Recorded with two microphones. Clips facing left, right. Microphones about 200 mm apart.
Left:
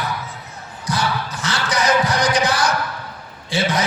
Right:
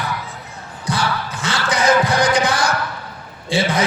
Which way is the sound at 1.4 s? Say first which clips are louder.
Right 4 dB; 25° right (ahead or behind).